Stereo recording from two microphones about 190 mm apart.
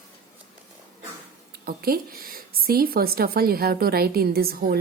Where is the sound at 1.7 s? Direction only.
50° right (ahead or behind).